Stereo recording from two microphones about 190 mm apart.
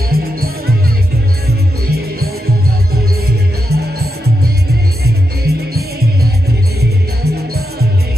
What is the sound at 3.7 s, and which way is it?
Music, 55° right (ahead or behind).